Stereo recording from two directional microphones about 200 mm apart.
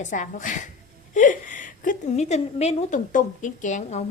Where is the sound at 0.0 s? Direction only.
40° left (ahead or behind).